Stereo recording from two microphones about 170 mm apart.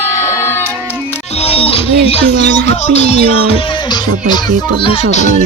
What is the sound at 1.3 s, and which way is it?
Music, 35° left (ahead or behind).